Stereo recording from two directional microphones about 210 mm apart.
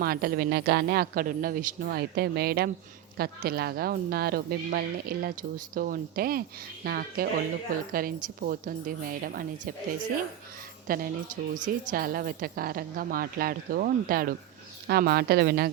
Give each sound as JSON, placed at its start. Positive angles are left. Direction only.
{"t": 0.0, "sound": "a woman's voice", "side_deg": -45}
{"t": 10.8, "sound": "speech", "side_deg": -45}